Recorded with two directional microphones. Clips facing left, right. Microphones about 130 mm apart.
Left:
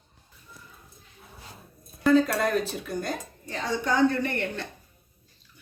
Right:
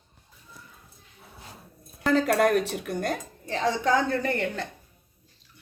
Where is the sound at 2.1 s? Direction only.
70° right (ahead or behind); by 3.7 s 90° right.